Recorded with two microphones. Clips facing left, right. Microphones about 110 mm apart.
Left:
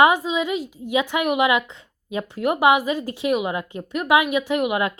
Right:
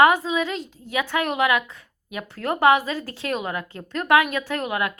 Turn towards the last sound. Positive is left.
turn(degrees=20)  # may be behind; listen again after turning